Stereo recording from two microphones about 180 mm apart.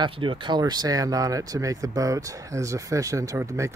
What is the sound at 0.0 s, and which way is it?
Speech, 25° right (ahead or behind).